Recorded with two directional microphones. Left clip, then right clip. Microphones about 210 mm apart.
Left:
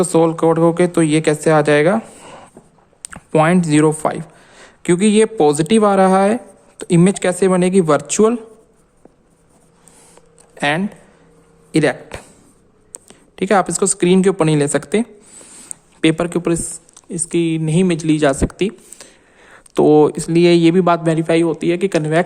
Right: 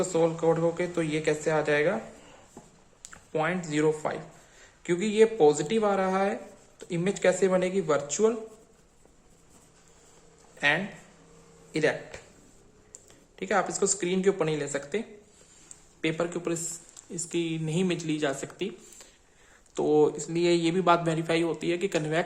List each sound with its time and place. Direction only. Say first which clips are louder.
0.0 s speech: left 11 dB; 55° left (ahead or behind)
11.7 s speech: left 11 dB; 55° left (ahead or behind); by 22.2 s 35° left (ahead or behind)